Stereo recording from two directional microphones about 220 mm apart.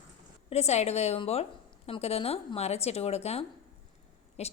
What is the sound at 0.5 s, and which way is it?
A woman's voice, 30° left (ahead or behind).